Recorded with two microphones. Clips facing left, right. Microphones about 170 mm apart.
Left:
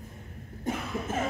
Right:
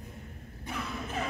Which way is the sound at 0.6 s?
45° left (ahead or behind).